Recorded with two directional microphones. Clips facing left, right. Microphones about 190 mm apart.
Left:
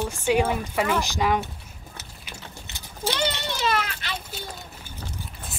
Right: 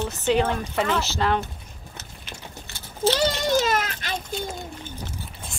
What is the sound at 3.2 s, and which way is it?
Speech, 45° right (ahead or behind).